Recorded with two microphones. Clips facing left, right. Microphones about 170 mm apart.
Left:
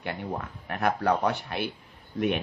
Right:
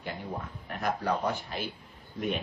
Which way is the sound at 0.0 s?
70° left (ahead or behind).